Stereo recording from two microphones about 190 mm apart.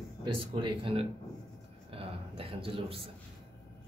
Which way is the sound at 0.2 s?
25° right (ahead or behind).